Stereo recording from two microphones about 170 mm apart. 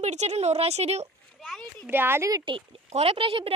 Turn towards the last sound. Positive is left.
turn(degrees=-35)  # may be behind; listen again after turning